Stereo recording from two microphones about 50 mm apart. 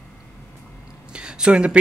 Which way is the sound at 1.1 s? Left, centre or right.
Centre.